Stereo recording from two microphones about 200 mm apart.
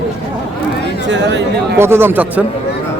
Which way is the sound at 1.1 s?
60° right (ahead or behind).